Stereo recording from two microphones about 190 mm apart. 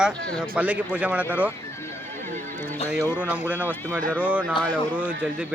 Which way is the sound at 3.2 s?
10° right (ahead or behind).